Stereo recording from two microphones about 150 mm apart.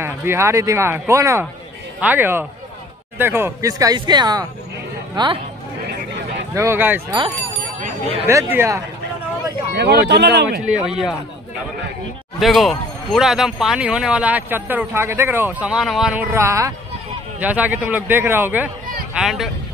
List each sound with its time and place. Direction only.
0.0 s speech: 15° right (ahead or behind)
6.5 s speech: 15° right (ahead or behind)
8.3 s speech: 15° right (ahead or behind)
9.8 s speech: 90° right
10.6 s speech: 5° right (ahead or behind)
12.4 s speech: centre (ahead or behind)
15.7 s speech: centre (ahead or behind)